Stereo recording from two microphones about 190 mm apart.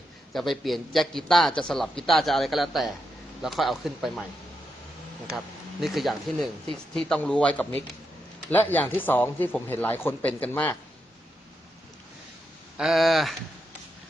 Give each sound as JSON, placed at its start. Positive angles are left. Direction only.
{"t": 0.3, "sound": "a man's voice", "side_deg": 0}
{"t": 5.8, "sound": "a man's voice", "side_deg": 0}
{"t": 12.7, "sound": "a man's voice", "side_deg": 0}